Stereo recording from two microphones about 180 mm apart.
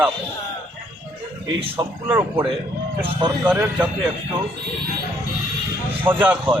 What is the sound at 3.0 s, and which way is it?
Speech, 30° right (ahead or behind).